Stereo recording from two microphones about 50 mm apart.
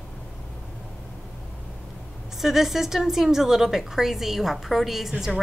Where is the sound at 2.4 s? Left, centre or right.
Centre.